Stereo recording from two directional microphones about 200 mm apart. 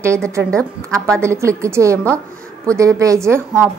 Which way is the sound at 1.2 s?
15° right (ahead or behind).